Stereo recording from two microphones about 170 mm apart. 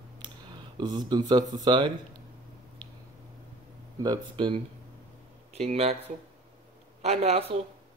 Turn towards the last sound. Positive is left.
turn(degrees=-35)  # may be behind; listen again after turning